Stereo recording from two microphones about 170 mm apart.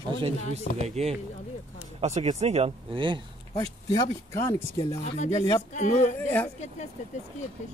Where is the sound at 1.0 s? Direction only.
40° right (ahead or behind).